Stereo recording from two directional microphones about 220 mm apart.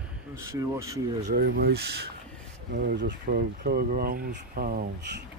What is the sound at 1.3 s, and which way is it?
Speech, 45° right (ahead or behind).